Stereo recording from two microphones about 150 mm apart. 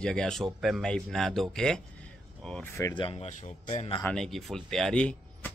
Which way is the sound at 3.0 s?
40° left (ahead or behind).